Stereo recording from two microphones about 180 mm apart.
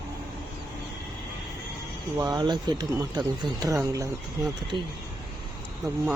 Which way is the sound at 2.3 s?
25° right (ahead or behind).